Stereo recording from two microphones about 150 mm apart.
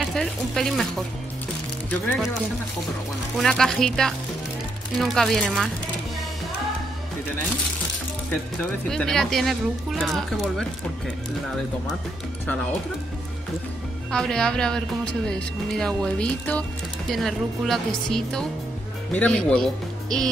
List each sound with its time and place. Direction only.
0.0 s speech: 5° left (ahead or behind)
3.3 s speech: centre (ahead or behind)
8.8 s speech: 5° left (ahead or behind)
14.1 s speech: 5° left (ahead or behind)